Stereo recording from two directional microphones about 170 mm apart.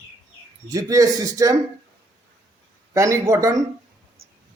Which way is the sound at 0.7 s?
20° right (ahead or behind).